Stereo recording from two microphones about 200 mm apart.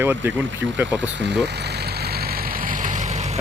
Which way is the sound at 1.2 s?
60° right (ahead or behind).